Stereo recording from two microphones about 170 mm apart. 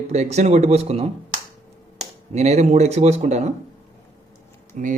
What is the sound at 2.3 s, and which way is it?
A man's voice, 40° right (ahead or behind).